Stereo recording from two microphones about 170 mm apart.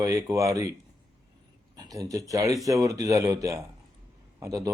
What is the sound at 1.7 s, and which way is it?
Speech, 20° right (ahead or behind).